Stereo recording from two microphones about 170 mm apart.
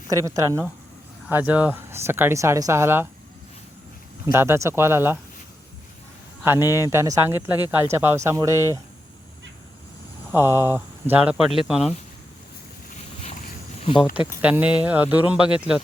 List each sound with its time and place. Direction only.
0.1 s speech: 20° right (ahead or behind)
4.3 s speech: 15° right (ahead or behind)
6.4 s speech: 15° right (ahead or behind)
10.3 s speech: 15° right (ahead or behind)
14.4 s speech: 10° right (ahead or behind)